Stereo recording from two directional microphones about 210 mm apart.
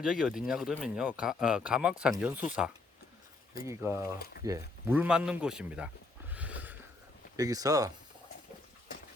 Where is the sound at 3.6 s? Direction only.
10° right (ahead or behind).